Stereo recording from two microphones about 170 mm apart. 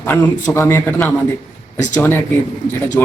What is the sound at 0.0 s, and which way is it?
Speech, 15° left (ahead or behind).